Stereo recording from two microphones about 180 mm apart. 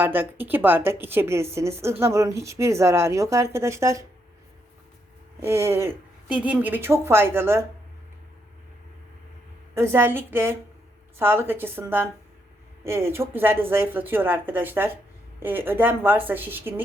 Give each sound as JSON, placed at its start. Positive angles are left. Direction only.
{"t": 0.0, "sound": "a woman's voice", "side_deg": -10}
{"t": 5.4, "sound": "a woman's voice", "side_deg": -15}
{"t": 9.7, "sound": "a woman's voice", "side_deg": -15}